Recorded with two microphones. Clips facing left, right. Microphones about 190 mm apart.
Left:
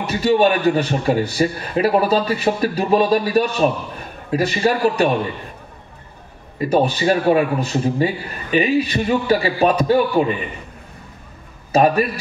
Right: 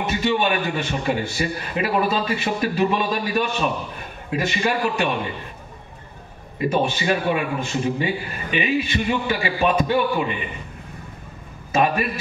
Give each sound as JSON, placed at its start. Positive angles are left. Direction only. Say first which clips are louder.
{"t": 0.0, "sound": "a man's voice", "louder": "left 6 dB", "side_deg": 40}
{"t": 6.7, "sound": "a man's voice", "louder": "left 6 dB", "side_deg": 40}
{"t": 11.7, "sound": "a man's voice", "louder": "left 5 dB", "side_deg": 40}